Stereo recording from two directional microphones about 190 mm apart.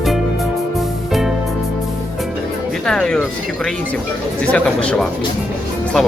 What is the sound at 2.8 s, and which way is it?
Music, 5° left (ahead or behind).